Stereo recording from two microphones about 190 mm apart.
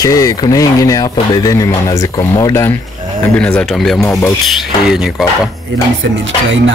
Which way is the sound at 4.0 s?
15° left (ahead or behind).